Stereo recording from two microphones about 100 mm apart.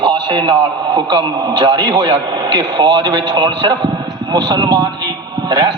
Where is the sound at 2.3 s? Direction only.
45° right (ahead or behind).